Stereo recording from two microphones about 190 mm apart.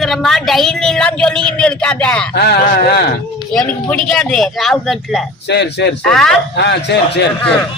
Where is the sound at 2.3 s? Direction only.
60° left (ahead or behind).